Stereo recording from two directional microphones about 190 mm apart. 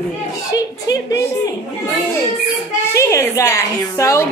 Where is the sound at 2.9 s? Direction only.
15° left (ahead or behind).